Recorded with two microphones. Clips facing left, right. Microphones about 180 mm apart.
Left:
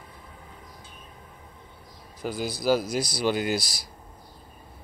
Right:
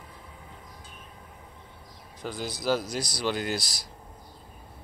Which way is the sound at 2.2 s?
10° left (ahead or behind).